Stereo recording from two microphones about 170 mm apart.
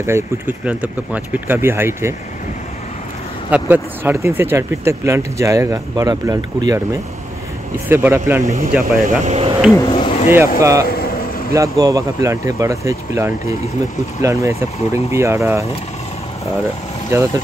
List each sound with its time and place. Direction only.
0.0 s speech: 15° right (ahead or behind)
3.4 s speech: 10° right (ahead or behind)
7.9 s speech: 10° right (ahead or behind)
8.7 s speech: centre (ahead or behind)
9.2 s speech: 35° right (ahead or behind)
9.8 s speech: 30° left (ahead or behind)
10.6 s speech: 20° right (ahead or behind)
10.9 s vehicle: 60° left (ahead or behind)
11.5 s speech: 20° right (ahead or behind)
14.5 s speech: 40° left (ahead or behind)
15.1 s speech: 15° right (ahead or behind)